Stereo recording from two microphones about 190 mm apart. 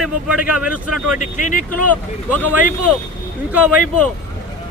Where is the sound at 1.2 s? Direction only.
40° left (ahead or behind).